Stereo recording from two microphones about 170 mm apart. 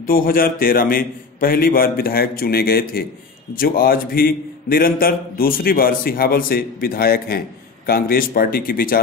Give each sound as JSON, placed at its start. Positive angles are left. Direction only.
{"t": 0.0, "sound": "a man's voice", "side_deg": 55}